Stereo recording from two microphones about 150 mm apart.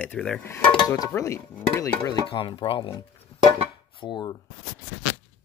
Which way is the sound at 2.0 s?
30° left (ahead or behind).